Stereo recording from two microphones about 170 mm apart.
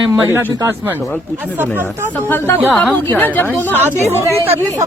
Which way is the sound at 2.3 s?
15° left (ahead or behind).